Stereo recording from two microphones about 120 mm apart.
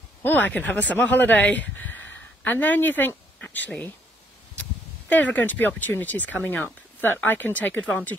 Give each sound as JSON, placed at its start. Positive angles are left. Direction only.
{"t": 0.2, "sound": "speech", "side_deg": 15}
{"t": 5.1, "sound": "speech", "side_deg": 15}